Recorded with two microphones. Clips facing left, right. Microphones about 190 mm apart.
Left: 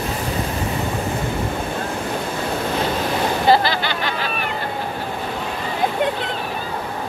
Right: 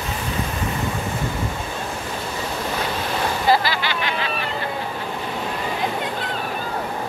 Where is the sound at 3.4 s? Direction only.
25° left (ahead or behind).